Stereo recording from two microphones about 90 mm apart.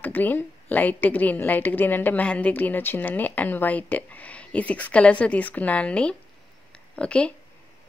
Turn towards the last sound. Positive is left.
turn(degrees=10)  # may be behind; listen again after turning